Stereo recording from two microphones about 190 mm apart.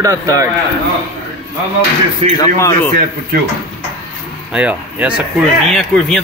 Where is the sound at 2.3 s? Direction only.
20° left (ahead or behind).